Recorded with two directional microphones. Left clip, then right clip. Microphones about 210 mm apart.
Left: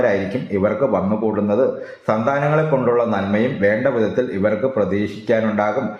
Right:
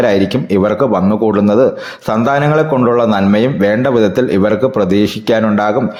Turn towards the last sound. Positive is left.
turn(degrees=-40)  # may be behind; listen again after turning